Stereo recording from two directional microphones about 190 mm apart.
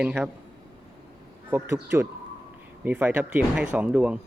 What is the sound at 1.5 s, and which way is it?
Speech, 15° right (ahead or behind).